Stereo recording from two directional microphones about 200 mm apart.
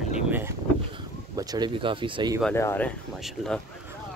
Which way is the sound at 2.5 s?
10° left (ahead or behind).